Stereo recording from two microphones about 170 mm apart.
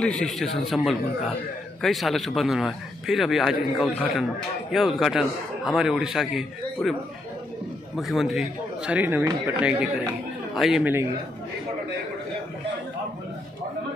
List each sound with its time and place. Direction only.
0.0 s a man's voice: 5° left (ahead or behind); by 11.1 s 10° right (ahead or behind)